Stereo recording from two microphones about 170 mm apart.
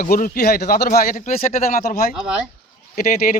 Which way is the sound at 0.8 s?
55° left (ahead or behind).